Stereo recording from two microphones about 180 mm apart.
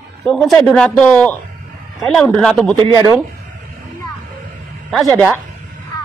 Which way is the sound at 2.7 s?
25° right (ahead or behind).